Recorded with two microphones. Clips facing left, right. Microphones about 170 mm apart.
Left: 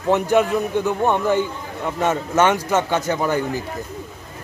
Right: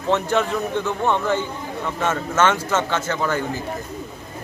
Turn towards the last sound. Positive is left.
turn(degrees=15)  # may be behind; listen again after turning